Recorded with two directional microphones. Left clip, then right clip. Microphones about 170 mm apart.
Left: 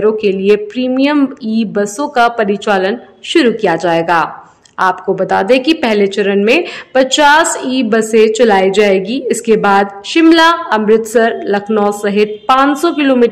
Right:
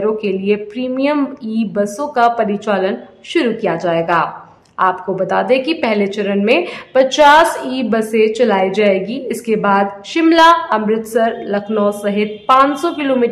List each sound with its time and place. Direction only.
0.0 s a woman's voice: 25° left (ahead or behind)